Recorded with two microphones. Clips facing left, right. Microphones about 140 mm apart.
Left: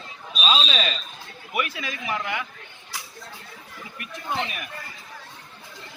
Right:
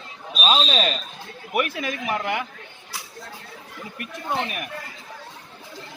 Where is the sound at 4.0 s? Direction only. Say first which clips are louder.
Right 2 dB; 50° right (ahead or behind).